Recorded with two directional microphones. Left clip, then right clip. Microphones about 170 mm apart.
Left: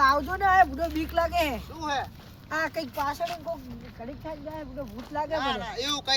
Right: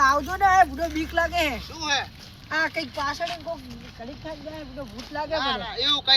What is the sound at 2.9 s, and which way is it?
Speech, 5° left (ahead or behind).